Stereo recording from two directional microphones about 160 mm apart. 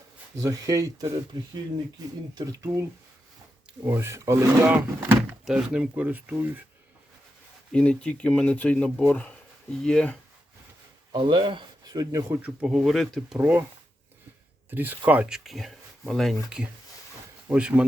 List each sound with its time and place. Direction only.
0.3 s speech: 20° right (ahead or behind)
2.4 s speech: 20° right (ahead or behind)
3.8 s speech: 15° right (ahead or behind)
7.7 s speech: 5° left (ahead or behind)
11.1 s speech: 30° right (ahead or behind)
12.4 s speech: 5° right (ahead or behind)
13.4 s speech: 10° right (ahead or behind)
14.7 s speech: 10° right (ahead or behind)